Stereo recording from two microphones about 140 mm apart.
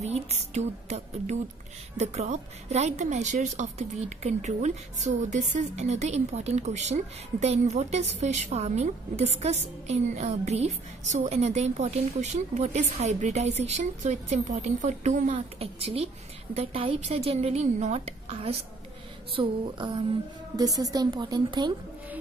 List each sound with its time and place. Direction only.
0.0 s a woman's voice: 50° right (ahead or behind)
20.5 s a woman's voice: 25° right (ahead or behind)